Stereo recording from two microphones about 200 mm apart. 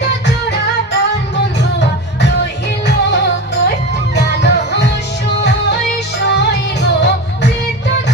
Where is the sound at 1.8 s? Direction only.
55° left (ahead or behind).